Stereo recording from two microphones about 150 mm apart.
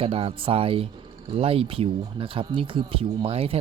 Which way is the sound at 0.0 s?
40° right (ahead or behind).